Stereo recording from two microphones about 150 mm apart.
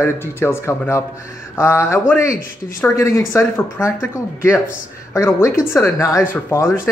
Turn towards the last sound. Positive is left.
turn(degrees=15)  # may be behind; listen again after turning